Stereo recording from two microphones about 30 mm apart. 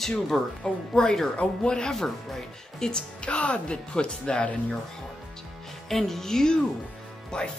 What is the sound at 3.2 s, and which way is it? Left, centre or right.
Speech, left.